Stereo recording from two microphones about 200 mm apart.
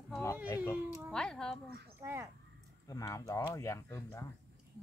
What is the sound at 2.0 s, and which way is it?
Speech, 15° right (ahead or behind).